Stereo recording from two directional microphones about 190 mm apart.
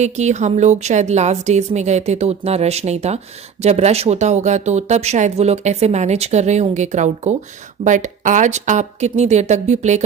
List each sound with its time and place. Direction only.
0.0 s speech: 35° right (ahead or behind)